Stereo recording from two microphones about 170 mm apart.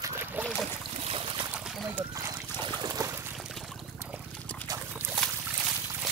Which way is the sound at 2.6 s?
25° right (ahead or behind).